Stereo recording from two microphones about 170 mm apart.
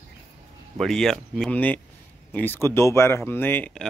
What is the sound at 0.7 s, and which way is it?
Speech, centre (ahead or behind).